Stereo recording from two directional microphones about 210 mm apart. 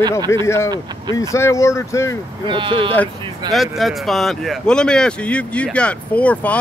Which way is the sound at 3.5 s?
Centre (ahead or behind).